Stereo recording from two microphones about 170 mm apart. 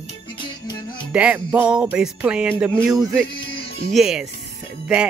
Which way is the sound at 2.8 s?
Centre (ahead or behind).